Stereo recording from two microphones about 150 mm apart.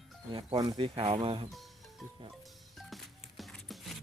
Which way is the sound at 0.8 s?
35° right (ahead or behind).